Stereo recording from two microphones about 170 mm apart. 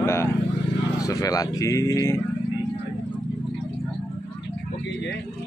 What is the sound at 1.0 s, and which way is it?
Speech, 20° left (ahead or behind).